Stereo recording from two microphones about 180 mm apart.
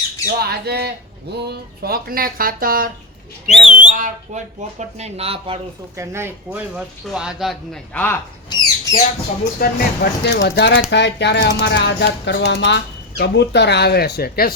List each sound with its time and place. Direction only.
0.3 s squawk: 65° right (ahead or behind)
1.5 s speech: 55° right (ahead or behind)
3.5 s a sound: 5° right (ahead or behind)
3.8 s speech: 45° right (ahead or behind)
6.0 s speech: 15° right (ahead or behind)
7.9 s speech: 10° left (ahead or behind)
8.4 s a sound: 20° left (ahead or behind)
9.6 s speech: 60° left (ahead or behind)